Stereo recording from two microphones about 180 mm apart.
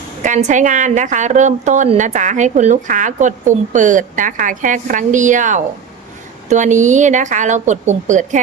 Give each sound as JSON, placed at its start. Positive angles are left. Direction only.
{"t": 0.2, "sound": "a woman's voice", "side_deg": -40}